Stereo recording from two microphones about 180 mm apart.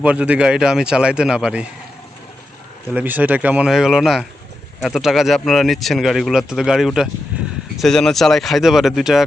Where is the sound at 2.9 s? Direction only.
10° right (ahead or behind).